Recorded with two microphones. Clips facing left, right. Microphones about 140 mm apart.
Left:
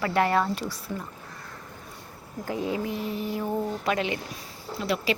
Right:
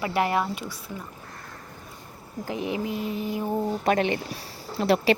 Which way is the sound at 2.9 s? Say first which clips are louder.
Right 1 dB; 30° left (ahead or behind).